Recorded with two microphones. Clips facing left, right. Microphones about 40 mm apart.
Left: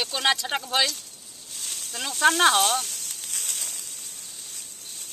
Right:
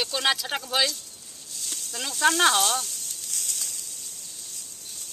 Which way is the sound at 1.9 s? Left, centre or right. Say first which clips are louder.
Left 2 dB; centre.